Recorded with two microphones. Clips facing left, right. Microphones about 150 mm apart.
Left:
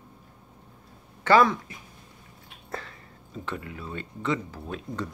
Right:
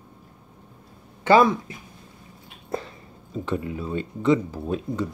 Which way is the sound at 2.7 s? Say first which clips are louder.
Right 7 dB; 20° right (ahead or behind).